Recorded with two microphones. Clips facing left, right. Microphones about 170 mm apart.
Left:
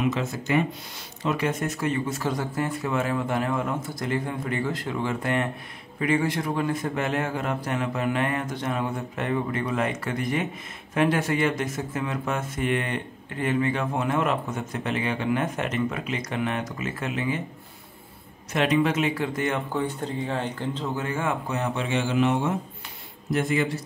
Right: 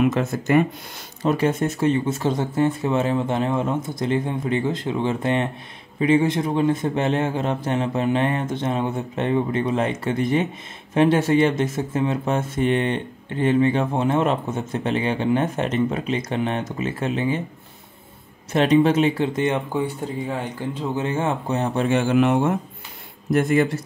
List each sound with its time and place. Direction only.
0.0 s speech: 50° right (ahead or behind)
1.2 s speech: 30° right (ahead or behind)
18.5 s speech: 30° right (ahead or behind)
21.7 s speech: 50° right (ahead or behind)